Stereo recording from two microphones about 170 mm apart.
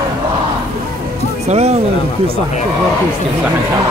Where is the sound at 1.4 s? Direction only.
40° right (ahead or behind).